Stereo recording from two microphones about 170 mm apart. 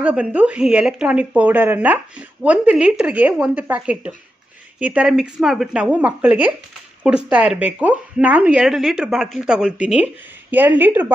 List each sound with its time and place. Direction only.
0.0 s a woman's voice: 10° right (ahead or behind)